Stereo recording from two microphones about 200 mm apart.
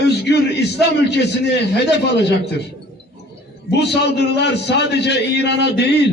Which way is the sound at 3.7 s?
55° left (ahead or behind).